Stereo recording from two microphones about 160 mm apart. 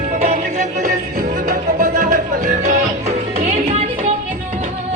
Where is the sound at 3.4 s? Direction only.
45° right (ahead or behind).